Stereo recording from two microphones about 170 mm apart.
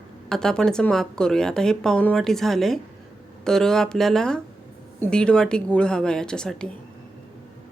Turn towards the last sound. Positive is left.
turn(degrees=5)  # may be behind; listen again after turning